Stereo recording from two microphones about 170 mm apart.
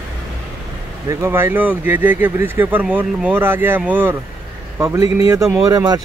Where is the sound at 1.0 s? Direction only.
15° right (ahead or behind).